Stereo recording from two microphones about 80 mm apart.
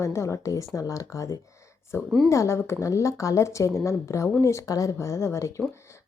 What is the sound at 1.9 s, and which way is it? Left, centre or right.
Speech, left.